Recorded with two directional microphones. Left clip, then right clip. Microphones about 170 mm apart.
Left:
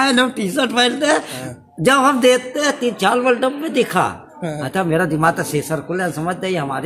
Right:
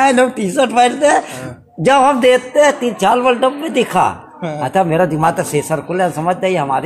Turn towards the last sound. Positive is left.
turn(degrees=25)  # may be behind; listen again after turning